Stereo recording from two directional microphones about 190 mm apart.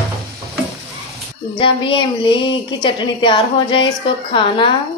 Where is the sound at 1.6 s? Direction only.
25° left (ahead or behind).